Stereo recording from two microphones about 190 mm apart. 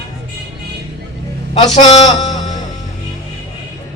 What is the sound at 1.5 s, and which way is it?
Speech, 25° left (ahead or behind).